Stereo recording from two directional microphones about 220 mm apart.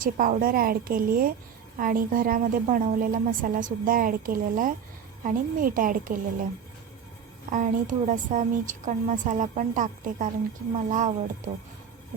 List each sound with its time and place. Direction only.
0.0 s a woman's voice: 40° right (ahead or behind)
7.5 s a woman's voice: 35° right (ahead or behind)